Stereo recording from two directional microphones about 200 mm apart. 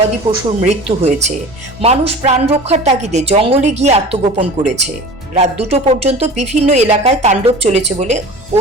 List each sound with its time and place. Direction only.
0.3 s a woman's voice: 30° right (ahead or behind)